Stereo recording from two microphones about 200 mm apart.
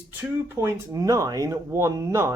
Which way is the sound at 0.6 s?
15° right (ahead or behind).